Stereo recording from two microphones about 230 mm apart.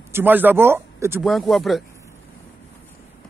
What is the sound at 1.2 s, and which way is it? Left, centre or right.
Speech, centre.